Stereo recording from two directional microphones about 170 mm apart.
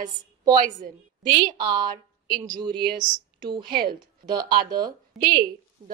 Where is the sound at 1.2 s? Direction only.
25° right (ahead or behind).